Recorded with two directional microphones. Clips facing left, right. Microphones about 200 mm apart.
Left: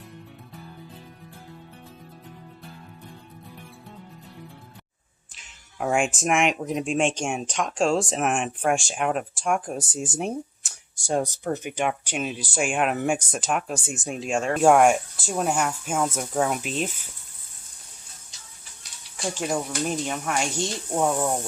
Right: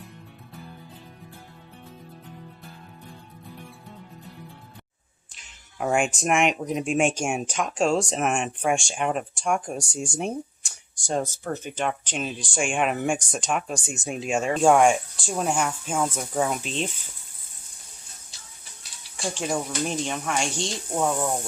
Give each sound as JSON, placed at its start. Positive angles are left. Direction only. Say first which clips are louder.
{"t": 5.3, "sound": "speech", "louder": "even", "side_deg": 0}
{"t": 19.4, "sound": "speech", "louder": "even", "side_deg": 5}